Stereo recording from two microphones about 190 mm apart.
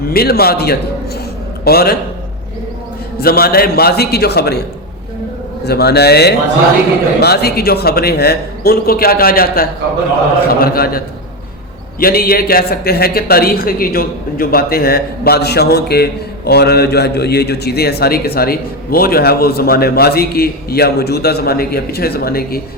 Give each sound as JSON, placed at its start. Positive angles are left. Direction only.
{"t": 0.0, "sound": "a man's voice", "side_deg": 55}
{"t": 3.2, "sound": "a man's voice", "side_deg": 55}
{"t": 5.6, "sound": "a man's voice", "side_deg": 55}